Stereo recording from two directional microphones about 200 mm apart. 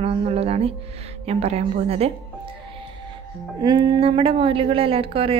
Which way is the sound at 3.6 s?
20° right (ahead or behind).